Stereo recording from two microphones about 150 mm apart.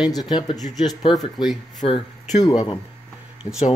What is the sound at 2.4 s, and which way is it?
Speech, 25° left (ahead or behind).